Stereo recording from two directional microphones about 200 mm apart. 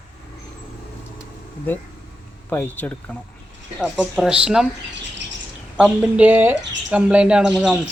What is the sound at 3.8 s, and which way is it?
Speech, 5° right (ahead or behind).